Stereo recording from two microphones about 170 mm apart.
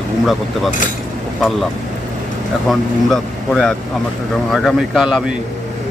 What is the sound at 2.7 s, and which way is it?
Speech, 5° left (ahead or behind).